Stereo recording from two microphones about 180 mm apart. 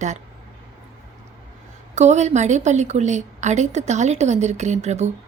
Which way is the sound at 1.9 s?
40° right (ahead or behind).